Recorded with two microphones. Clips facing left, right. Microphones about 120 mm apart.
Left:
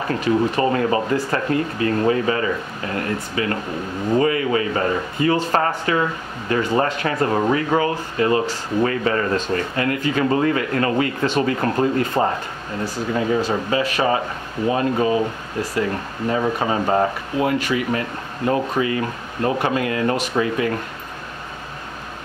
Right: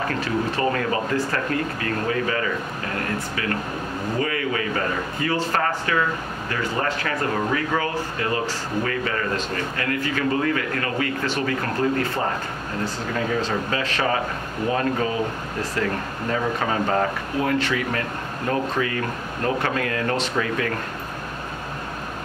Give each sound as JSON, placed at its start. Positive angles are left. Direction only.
{"t": 0.1, "sound": "speech", "side_deg": 25}
{"t": 12.8, "sound": "speech", "side_deg": 10}